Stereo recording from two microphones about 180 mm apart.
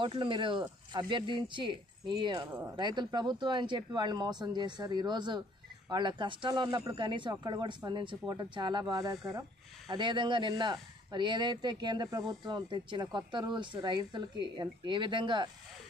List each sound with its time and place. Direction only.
0.0 s speech: 25° right (ahead or behind)